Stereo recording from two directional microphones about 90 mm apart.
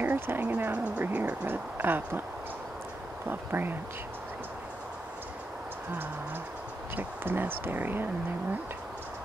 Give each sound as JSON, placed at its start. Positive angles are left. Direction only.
{"t": 0.0, "sound": "speech", "side_deg": -20}
{"t": 3.3, "sound": "speech", "side_deg": -25}
{"t": 7.0, "sound": "speech", "side_deg": -25}